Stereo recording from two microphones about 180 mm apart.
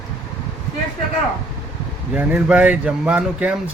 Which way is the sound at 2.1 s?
5° right (ahead or behind).